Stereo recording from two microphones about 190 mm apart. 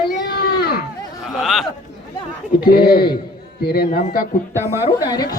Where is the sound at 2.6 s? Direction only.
55° left (ahead or behind).